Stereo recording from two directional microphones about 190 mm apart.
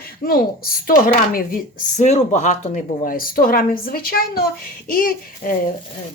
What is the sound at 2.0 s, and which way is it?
Speech, 35° left (ahead or behind).